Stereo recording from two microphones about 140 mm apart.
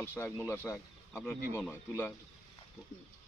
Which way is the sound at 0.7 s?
5° left (ahead or behind).